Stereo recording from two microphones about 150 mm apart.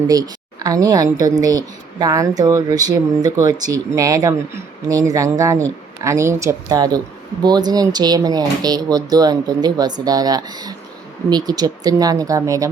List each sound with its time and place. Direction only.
0.1 s speech: 25° right (ahead or behind)